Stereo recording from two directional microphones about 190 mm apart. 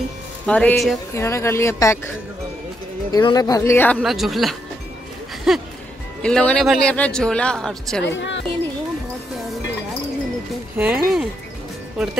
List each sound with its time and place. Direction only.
0.5 s a man's voice: 5° left (ahead or behind)
1.1 s speech: 15° left (ahead or behind)
3.1 s speech: 20° left (ahead or behind)
4.0 s a man's voice: centre (ahead or behind)
8.0 s a woman's voice: 70° left (ahead or behind)
10.8 s a man's voice: 5° right (ahead or behind)